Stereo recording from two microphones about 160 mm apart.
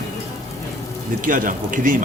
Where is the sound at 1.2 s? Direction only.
55° right (ahead or behind).